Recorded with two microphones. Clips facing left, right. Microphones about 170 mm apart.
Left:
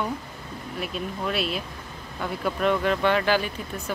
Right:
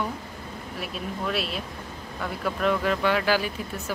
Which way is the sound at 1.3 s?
Centre (ahead or behind).